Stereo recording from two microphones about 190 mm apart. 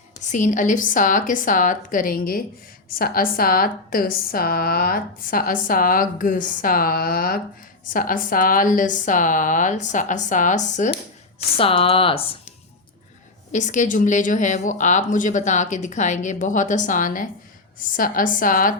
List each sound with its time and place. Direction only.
0.3 s a woman's voice: 40° left (ahead or behind)
11.5 s speech: 30° left (ahead or behind)
13.5 s a woman's voice: 40° left (ahead or behind)